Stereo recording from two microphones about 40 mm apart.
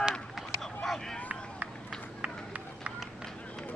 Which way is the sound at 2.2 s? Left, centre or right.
Right.